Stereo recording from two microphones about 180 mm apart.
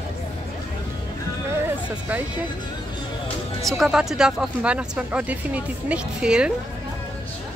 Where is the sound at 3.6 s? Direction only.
Centre (ahead or behind).